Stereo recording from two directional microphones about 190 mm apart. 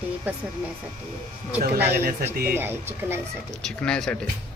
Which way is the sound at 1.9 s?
55° right (ahead or behind).